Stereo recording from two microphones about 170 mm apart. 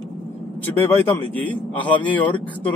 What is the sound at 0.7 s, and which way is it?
Speech, 10° left (ahead or behind).